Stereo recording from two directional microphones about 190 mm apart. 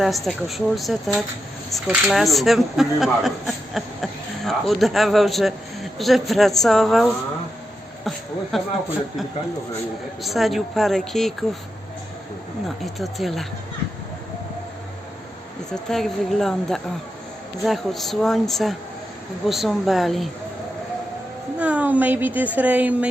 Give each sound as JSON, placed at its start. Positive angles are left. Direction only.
{"t": 0.0, "sound": "speech", "side_deg": 0}
{"t": 8.5, "sound": "speech", "side_deg": 0}
{"t": 10.2, "sound": "speech", "side_deg": 0}
{"t": 12.6, "sound": "speech", "side_deg": 0}
{"t": 15.7, "sound": "speech", "side_deg": 0}
{"t": 21.6, "sound": "a woman's voice", "side_deg": -5}